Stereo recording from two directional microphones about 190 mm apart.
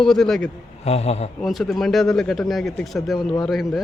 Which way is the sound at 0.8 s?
35° left (ahead or behind).